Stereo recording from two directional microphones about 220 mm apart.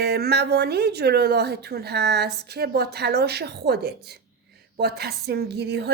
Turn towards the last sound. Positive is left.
turn(degrees=-50)  # may be behind; listen again after turning